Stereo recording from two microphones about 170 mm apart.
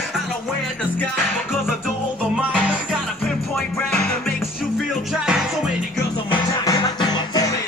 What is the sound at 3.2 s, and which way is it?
Music, centre (ahead or behind).